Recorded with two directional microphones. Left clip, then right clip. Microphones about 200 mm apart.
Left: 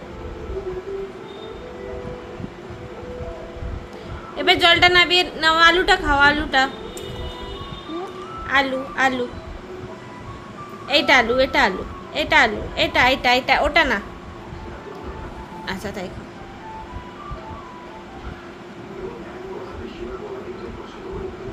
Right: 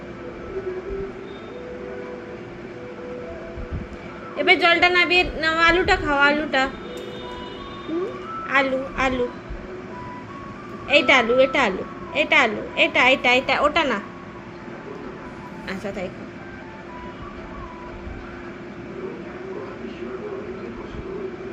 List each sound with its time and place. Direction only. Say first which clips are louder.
4.4 s a woman's voice: left 2 dB; 30° left (ahead or behind)
8.4 s a woman's voice: left 1 dB; 30° left (ahead or behind)
10.9 s a woman's voice: even; 30° left (ahead or behind)
15.6 s a woman's voice: left 1 dB; 30° left (ahead or behind)